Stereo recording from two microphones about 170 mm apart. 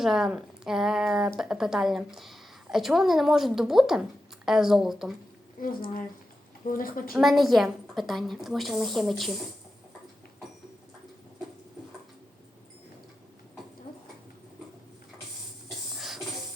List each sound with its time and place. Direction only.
0.0 s a woman's voice: 5° right (ahead or behind)
5.6 s a woman's voice: 55° left (ahead or behind)
7.1 s a woman's voice: centre (ahead or behind)
16.0 s a sound: centre (ahead or behind)